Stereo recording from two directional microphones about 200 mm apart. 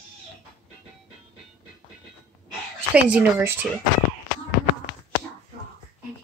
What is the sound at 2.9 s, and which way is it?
Speech, 5° right (ahead or behind).